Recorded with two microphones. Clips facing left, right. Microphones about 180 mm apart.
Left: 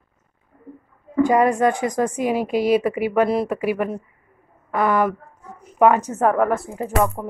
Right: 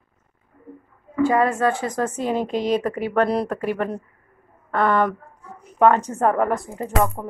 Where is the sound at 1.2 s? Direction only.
15° left (ahead or behind).